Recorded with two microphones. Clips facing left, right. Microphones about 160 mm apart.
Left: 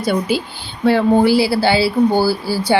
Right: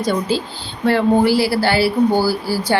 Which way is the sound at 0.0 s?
10° left (ahead or behind).